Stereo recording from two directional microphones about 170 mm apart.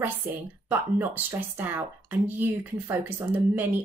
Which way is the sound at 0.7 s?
10° right (ahead or behind).